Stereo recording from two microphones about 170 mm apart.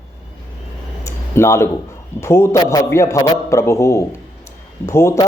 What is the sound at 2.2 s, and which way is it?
A man's voice, 15° left (ahead or behind).